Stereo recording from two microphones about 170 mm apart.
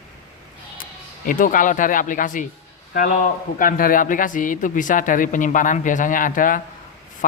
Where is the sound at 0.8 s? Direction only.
50° left (ahead or behind).